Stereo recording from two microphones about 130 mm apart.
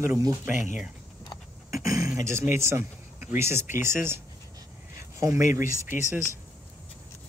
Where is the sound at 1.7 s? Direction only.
25° right (ahead or behind).